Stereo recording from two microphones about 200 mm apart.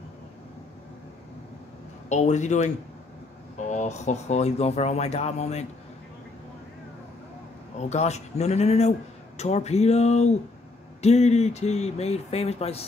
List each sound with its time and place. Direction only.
2.0 s speech: 35° left (ahead or behind)
7.9 s speech: 35° left (ahead or behind)